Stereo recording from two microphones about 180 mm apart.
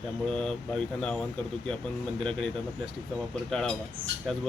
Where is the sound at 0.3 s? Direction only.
5° left (ahead or behind).